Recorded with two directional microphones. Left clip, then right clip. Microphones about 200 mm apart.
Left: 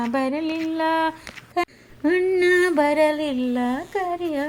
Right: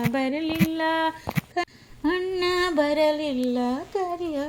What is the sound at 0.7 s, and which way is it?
Speech, 5° left (ahead or behind).